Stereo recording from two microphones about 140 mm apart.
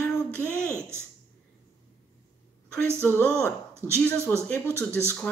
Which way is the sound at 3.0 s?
15° left (ahead or behind).